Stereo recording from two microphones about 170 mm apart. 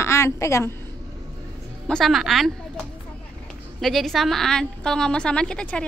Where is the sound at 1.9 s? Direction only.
Centre (ahead or behind).